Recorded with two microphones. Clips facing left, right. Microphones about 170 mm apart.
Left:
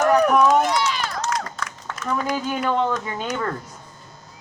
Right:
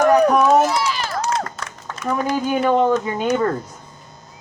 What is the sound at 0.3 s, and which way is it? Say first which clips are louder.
Run: right 2 dB; 5° right (ahead or behind).